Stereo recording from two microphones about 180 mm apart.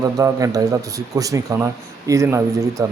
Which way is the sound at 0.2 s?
20° right (ahead or behind).